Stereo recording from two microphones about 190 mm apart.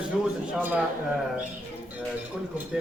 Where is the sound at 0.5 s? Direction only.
10° right (ahead or behind).